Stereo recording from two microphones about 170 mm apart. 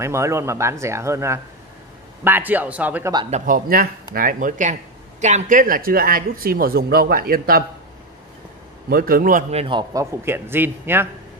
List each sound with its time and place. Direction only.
0.0 s speech: 15° right (ahead or behind)
3.3 s speech: 45° right (ahead or behind)
8.9 s speech: 60° right (ahead or behind)
9.5 s a man's voice: 35° right (ahead or behind)
10.2 s speech: 15° right (ahead or behind)